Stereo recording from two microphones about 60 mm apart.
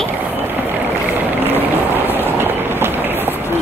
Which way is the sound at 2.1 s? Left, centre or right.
Right.